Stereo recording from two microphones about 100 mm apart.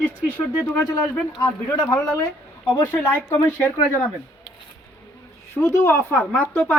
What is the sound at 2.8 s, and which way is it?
Speech, 20° left (ahead or behind).